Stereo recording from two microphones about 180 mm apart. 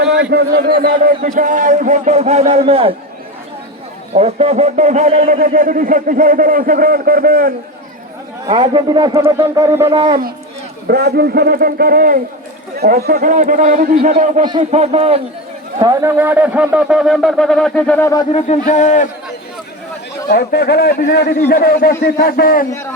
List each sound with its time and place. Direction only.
0.0 s a man's voice: 70° right (ahead or behind)
1.2 s a man's voice: 45° right (ahead or behind)
4.1 s a man's voice: 35° right (ahead or behind); by 7.5 s 55° right (ahead or behind)
8.4 s a man's voice: 25° right (ahead or behind)
10.8 s a man's voice: 60° right (ahead or behind); by 15.2 s 35° right (ahead or behind)
15.8 s speech: 20° right (ahead or behind); by 18.3 s 15° left (ahead or behind)
18.3 s a man's voice: 40° left (ahead or behind)
20.2 s a man's voice: 65° left (ahead or behind)